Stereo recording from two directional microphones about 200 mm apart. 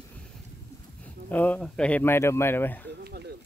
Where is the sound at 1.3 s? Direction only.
10° left (ahead or behind).